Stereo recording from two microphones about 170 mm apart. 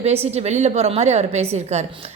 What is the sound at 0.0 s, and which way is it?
A woman's voice, 40° right (ahead or behind).